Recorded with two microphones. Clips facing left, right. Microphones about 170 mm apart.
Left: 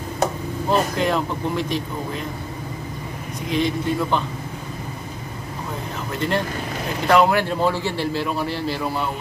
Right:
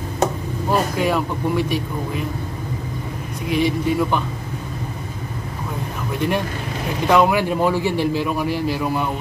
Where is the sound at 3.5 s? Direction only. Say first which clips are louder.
Right 2 dB; 10° right (ahead or behind).